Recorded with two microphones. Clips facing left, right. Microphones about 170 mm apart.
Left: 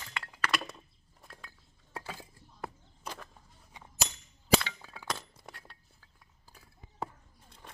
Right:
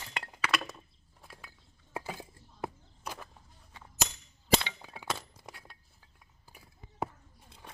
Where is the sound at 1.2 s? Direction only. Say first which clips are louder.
Even; 5° right (ahead or behind).